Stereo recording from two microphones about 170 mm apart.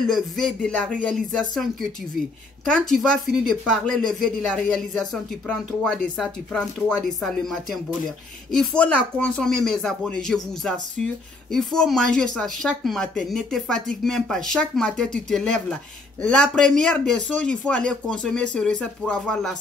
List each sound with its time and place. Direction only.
0.0 s speech: 5° left (ahead or behind)